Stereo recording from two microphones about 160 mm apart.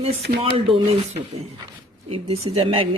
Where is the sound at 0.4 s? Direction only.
35° right (ahead or behind).